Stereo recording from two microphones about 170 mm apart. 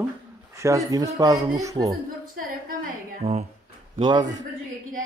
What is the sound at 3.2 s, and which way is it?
Speech, 35° right (ahead or behind).